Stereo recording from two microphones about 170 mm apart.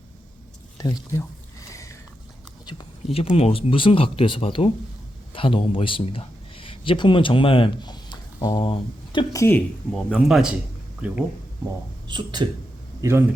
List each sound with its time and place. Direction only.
0.8 s speech: 20° left (ahead or behind)
1.7 s a sound: 20° left (ahead or behind)
2.6 s a man's voice: 30° left (ahead or behind)
9.3 s speech: 15° left (ahead or behind)
9.9 s speech: centre (ahead or behind)
12.0 s speech: 25° right (ahead or behind)
13.0 s a man's voice: 15° right (ahead or behind)